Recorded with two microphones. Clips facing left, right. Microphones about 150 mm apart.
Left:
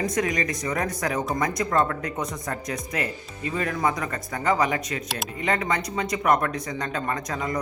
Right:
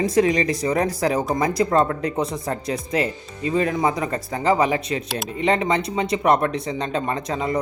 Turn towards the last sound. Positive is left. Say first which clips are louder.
# right 4 dB
turn(degrees=-25)  # may be behind; listen again after turning